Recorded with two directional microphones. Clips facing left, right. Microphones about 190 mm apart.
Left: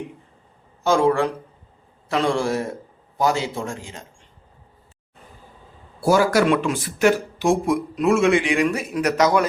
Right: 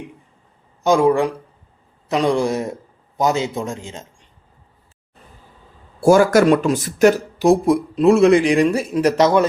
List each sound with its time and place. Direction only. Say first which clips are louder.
0.9 s a man's voice: right 3 dB; 15° right (ahead or behind)
6.0 s a man's voice: right 5 dB; 50° right (ahead or behind); by 9.5 s 25° right (ahead or behind)